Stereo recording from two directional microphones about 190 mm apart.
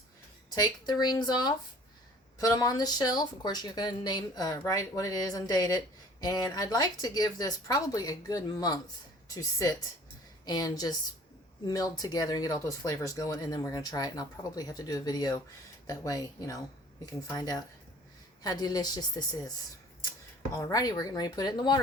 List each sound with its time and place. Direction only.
0.5 s a woman's voice: 20° left (ahead or behind)
20.6 s speech: 20° left (ahead or behind)